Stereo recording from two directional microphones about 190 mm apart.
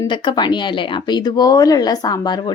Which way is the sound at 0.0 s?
25° left (ahead or behind).